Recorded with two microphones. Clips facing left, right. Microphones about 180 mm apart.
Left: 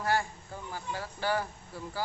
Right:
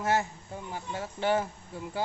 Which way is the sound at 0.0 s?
20° right (ahead or behind).